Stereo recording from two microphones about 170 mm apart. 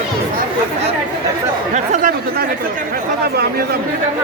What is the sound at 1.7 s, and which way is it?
Chatter, 45° right (ahead or behind).